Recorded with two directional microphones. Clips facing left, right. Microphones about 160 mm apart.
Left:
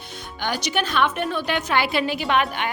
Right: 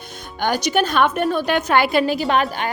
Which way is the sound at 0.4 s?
45° right (ahead or behind).